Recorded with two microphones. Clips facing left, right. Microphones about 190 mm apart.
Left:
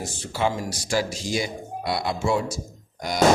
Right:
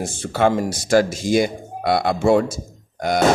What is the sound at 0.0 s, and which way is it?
Speech, 55° right (ahead or behind).